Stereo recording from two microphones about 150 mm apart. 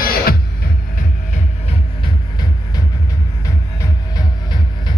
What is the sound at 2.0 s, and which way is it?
Music, 30° left (ahead or behind).